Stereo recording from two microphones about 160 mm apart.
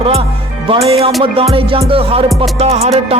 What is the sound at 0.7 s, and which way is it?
Music, 35° right (ahead or behind).